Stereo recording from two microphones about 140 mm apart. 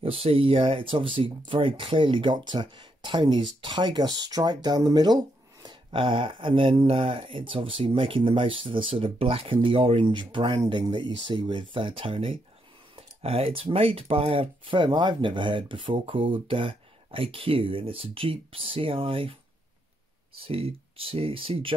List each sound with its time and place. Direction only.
0.0 s speech: 45° right (ahead or behind)
20.3 s speech: 40° right (ahead or behind)